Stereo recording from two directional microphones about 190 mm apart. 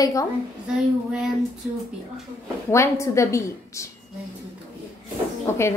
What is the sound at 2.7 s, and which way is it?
A woman's voice, 15° left (ahead or behind).